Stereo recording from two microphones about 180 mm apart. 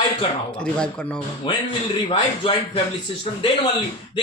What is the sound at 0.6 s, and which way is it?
Speech, 5° left (ahead or behind).